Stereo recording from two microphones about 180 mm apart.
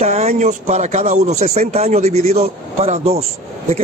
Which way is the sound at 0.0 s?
35° right (ahead or behind).